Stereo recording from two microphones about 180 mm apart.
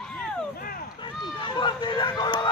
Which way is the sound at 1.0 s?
25° left (ahead or behind).